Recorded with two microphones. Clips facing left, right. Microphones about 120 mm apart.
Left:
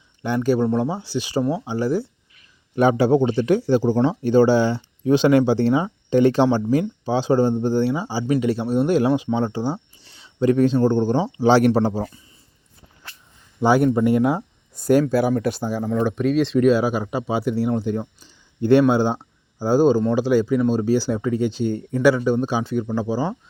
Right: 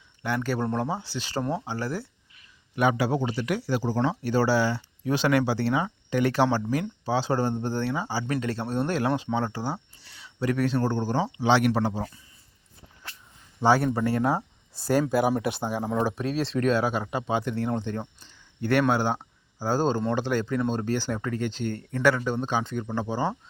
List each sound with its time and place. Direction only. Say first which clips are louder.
0.2 s speech: left 8 dB; 20° left (ahead or behind)
2.7 s speech: left 8 dB; 30° left (ahead or behind)
11.3 s speech: left 7 dB; 40° left (ahead or behind)
13.9 s speech: left 7 dB; 15° left (ahead or behind)
15.6 s speech: left 4 dB; 15° right (ahead or behind)
16.0 s speech: left 9 dB; 5° right (ahead or behind)